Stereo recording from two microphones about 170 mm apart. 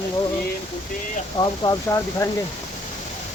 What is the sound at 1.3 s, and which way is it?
Speech, 25° left (ahead or behind).